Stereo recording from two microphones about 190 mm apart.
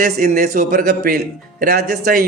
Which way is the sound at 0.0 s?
50° right (ahead or behind).